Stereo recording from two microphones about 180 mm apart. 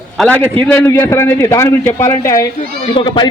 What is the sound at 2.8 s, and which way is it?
Speech, 30° left (ahead or behind).